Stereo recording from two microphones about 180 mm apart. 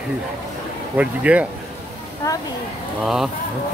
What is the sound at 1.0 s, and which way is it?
Speech, 10° right (ahead or behind).